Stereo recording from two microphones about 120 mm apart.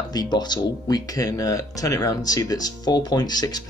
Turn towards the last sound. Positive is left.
turn(degrees=35)  # may be behind; listen again after turning